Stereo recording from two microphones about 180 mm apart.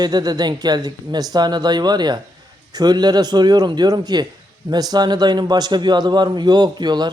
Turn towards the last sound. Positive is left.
turn(degrees=-25)  # may be behind; listen again after turning